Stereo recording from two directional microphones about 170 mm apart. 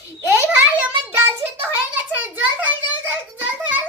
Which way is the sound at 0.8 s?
10° right (ahead or behind).